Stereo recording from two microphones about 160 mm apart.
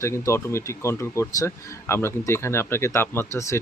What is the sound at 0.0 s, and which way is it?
Speech, 15° left (ahead or behind).